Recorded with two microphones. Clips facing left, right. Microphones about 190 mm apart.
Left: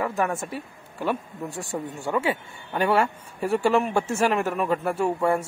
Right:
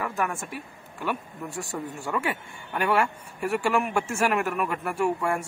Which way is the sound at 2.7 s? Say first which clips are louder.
Left 2 dB; 25° left (ahead or behind).